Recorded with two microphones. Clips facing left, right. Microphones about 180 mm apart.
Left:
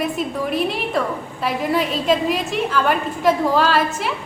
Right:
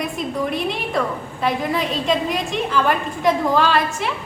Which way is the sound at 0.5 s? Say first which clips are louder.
Left 2 dB; 5° left (ahead or behind).